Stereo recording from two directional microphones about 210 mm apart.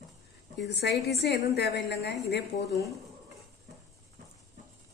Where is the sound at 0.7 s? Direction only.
55° left (ahead or behind).